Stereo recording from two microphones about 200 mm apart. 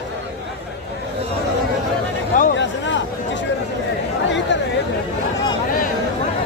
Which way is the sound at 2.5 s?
65° left (ahead or behind).